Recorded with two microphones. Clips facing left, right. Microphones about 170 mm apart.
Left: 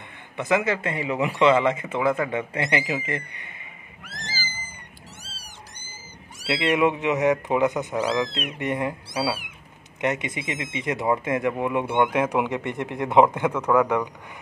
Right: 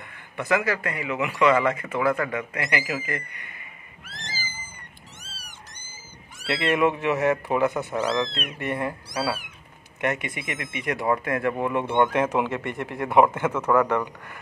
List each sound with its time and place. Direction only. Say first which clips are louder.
0.4 s speech: left 1 dB; 20° left (ahead or behind)
6.4 s speech: left 1 dB; 15° left (ahead or behind)